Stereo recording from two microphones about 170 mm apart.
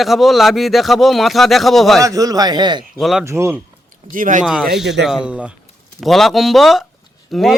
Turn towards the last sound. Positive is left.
turn(degrees=0)  # may be behind; listen again after turning